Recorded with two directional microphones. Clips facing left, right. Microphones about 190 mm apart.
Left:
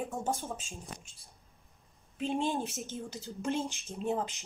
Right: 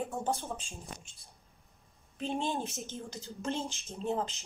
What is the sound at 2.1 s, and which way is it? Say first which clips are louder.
Speech: left 2 dB; centre (ahead or behind).